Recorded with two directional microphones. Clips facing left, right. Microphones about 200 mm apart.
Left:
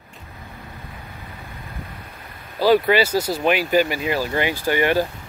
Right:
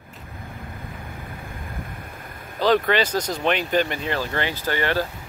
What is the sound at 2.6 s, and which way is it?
Speech, 10° left (ahead or behind).